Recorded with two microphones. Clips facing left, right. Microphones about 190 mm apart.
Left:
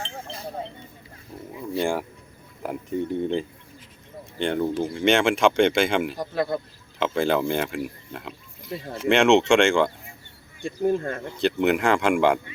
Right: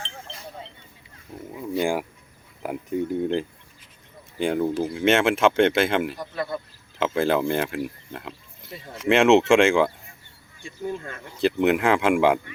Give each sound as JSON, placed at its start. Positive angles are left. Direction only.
{"t": 1.8, "sound": "speech", "side_deg": -5}
{"t": 6.1, "sound": "speech", "side_deg": 45}
{"t": 7.0, "sound": "speech", "side_deg": 0}
{"t": 10.8, "sound": "speech", "side_deg": 50}
{"t": 11.3, "sound": "speech", "side_deg": 0}